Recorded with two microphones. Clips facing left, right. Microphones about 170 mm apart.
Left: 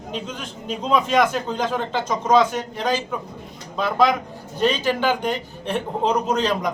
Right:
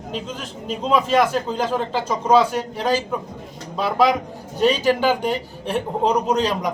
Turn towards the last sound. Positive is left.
turn(degrees=-10)  # may be behind; listen again after turning